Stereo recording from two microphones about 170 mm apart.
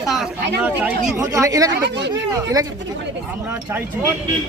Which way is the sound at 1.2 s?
20° right (ahead or behind).